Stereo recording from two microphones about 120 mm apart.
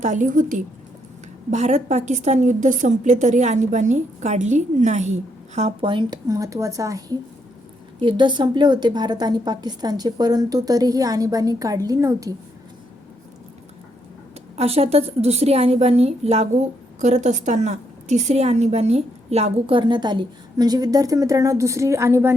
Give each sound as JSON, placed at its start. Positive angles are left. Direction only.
{"t": 0.0, "sound": "a woman's voice", "side_deg": -90}
{"t": 5.8, "sound": "a woman's voice", "side_deg": -40}
{"t": 6.2, "sound": "speech", "side_deg": -25}
{"t": 7.9, "sound": "a woman's voice", "side_deg": -40}
{"t": 14.5, "sound": "a woman's voice", "side_deg": -60}